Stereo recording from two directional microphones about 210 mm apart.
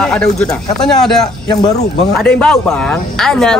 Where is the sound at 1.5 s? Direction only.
20° left (ahead or behind).